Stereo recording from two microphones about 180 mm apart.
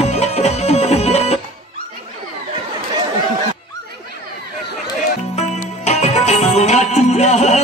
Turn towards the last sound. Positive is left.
turn(degrees=40)  # may be behind; listen again after turning